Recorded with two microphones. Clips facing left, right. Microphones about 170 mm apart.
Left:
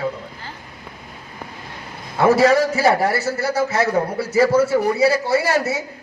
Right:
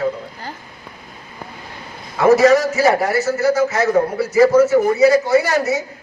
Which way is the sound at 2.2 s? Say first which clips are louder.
Right 3 dB; 30° left (ahead or behind).